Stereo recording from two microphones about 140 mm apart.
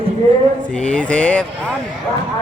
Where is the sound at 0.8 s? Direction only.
10° left (ahead or behind).